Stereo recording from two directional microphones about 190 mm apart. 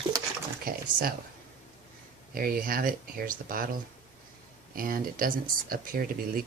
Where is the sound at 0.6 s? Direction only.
50° right (ahead or behind).